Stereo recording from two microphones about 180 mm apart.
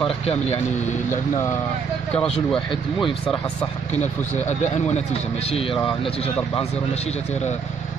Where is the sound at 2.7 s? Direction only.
25° left (ahead or behind).